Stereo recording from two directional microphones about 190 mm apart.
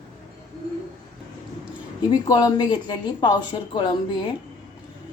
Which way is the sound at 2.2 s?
20° left (ahead or behind).